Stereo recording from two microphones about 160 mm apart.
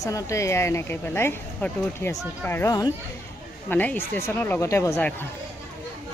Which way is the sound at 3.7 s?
10° left (ahead or behind).